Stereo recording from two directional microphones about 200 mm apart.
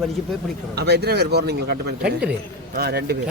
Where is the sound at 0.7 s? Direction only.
55° right (ahead or behind).